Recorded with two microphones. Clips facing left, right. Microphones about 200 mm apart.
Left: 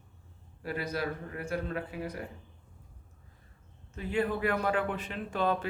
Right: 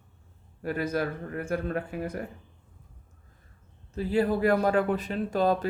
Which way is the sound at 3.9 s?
35° right (ahead or behind).